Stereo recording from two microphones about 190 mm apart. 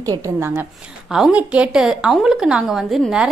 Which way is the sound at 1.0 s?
Centre (ahead or behind).